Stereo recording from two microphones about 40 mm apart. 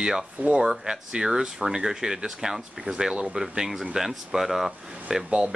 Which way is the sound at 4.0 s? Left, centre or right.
Centre.